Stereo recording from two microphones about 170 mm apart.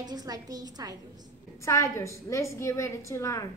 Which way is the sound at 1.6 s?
15° left (ahead or behind).